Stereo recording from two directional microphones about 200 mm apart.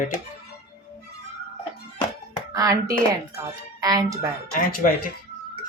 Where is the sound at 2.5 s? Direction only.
15° right (ahead or behind).